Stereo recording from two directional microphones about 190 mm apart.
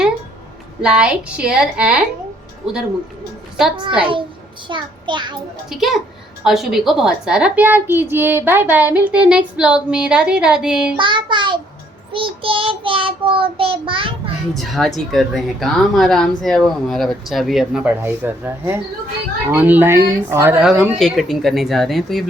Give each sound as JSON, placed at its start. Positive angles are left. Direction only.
{"t": 0.8, "sound": "speech", "side_deg": -5}
{"t": 3.8, "sound": "child singing", "side_deg": -25}
{"t": 5.6, "sound": "speech", "side_deg": 0}
{"t": 10.9, "sound": "child singing", "side_deg": -25}
{"t": 14.5, "sound": "speech", "side_deg": 0}